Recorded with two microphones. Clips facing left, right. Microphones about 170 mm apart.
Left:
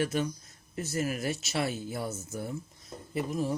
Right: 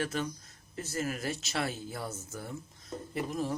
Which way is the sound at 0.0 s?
15° left (ahead or behind).